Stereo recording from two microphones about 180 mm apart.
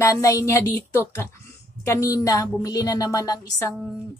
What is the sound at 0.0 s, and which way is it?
A woman's voice, 15° left (ahead or behind).